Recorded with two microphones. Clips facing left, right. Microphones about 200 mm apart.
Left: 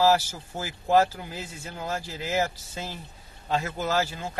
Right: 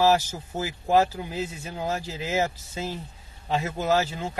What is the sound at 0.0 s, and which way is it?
Speech, 20° right (ahead or behind).